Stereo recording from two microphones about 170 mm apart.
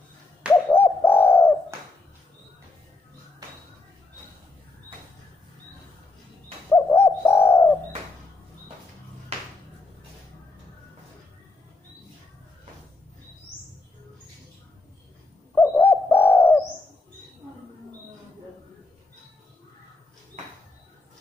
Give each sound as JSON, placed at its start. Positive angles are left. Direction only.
{"t": 0.7, "sound": "bird", "side_deg": 10}
{"t": 6.7, "sound": "bird", "side_deg": 15}
{"t": 9.3, "sound": "a sound", "side_deg": -35}
{"t": 15.5, "sound": "bird", "side_deg": 10}